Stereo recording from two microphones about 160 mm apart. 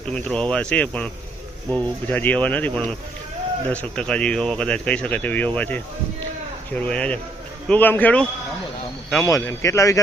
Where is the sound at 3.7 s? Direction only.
5° left (ahead or behind).